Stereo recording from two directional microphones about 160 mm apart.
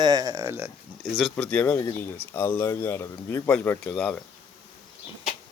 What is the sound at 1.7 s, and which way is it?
Speech, 20° left (ahead or behind).